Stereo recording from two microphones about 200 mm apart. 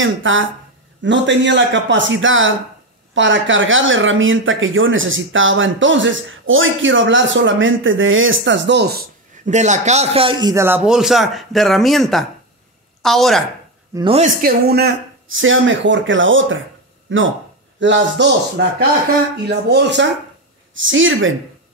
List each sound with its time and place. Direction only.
0.0 s speech: 75° right (ahead or behind)
1.0 s speech: 65° right (ahead or behind)
9.5 s a man's voice: 35° right (ahead or behind); by 13.4 s centre (ahead or behind)
13.9 s a woman's voice: 30° right (ahead or behind)
14.4 s speech: 50° right (ahead or behind)
15.2 s speech: 75° right (ahead or behind); by 20.1 s 60° right (ahead or behind)
20.7 s speech: 70° right (ahead or behind)